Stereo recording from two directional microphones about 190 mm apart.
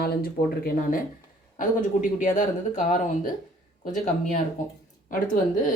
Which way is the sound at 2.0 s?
40° left (ahead or behind).